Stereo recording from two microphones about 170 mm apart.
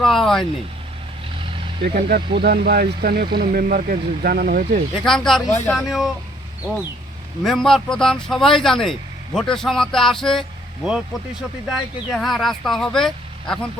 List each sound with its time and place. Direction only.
0.0 s a man's voice: centre (ahead or behind)
1.8 s speech: 60° right (ahead or behind)
5.0 s a man's voice: centre (ahead or behind)
7.4 s a man's voice: centre (ahead or behind)